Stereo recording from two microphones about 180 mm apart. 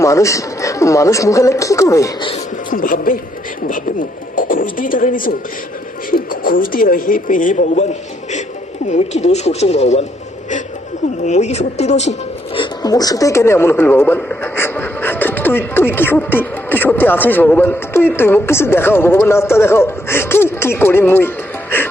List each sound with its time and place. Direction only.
0.0 s speech: 15° left (ahead or behind)
2.3 s a man's voice: 50° left (ahead or behind)
8.9 s speech: 40° left (ahead or behind)
11.2 s speech: 40° left (ahead or behind)
12.5 s speech: 20° left (ahead or behind)